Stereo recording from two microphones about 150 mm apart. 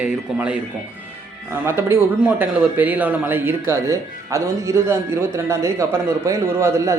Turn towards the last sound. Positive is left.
turn(degrees=-20)  # may be behind; listen again after turning